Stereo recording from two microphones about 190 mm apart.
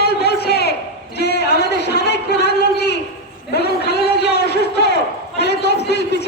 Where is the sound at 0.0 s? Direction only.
55° left (ahead or behind).